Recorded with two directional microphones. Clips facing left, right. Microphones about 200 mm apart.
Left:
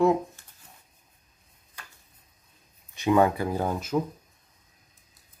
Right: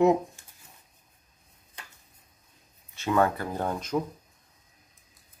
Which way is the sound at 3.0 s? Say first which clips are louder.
Left 3 dB; 15° left (ahead or behind).